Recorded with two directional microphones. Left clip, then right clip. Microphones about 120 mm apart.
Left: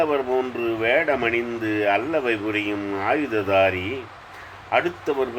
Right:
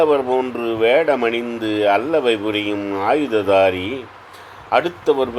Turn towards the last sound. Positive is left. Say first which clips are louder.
# right 5 dB
turn(degrees=-40)  # may be behind; listen again after turning